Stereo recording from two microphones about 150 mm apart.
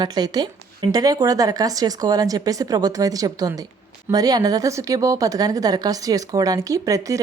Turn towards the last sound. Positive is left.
turn(degrees=-20)  # may be behind; listen again after turning